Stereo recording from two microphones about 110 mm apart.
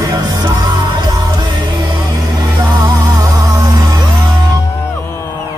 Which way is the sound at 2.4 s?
40° right (ahead or behind).